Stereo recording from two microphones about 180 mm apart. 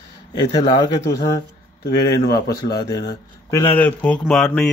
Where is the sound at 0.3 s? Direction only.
25° left (ahead or behind).